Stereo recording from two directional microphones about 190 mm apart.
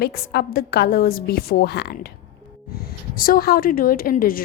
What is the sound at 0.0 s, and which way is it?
A woman's voice, 55° left (ahead or behind).